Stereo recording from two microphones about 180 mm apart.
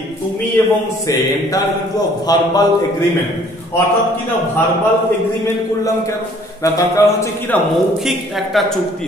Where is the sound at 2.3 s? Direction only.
20° left (ahead or behind).